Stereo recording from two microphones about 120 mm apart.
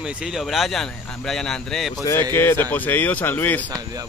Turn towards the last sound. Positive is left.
turn(degrees=15)  # may be behind; listen again after turning